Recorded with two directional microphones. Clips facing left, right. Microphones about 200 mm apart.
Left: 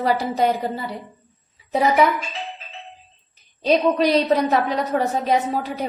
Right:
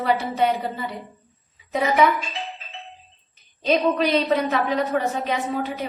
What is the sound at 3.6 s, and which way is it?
Speech, 35° left (ahead or behind).